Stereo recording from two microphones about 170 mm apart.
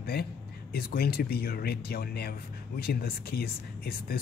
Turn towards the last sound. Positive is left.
turn(degrees=65)  # may be behind; listen again after turning